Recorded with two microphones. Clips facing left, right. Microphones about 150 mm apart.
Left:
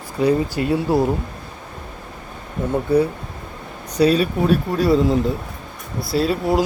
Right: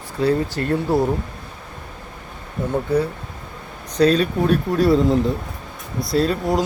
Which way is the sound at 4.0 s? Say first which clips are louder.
Even; 10° left (ahead or behind).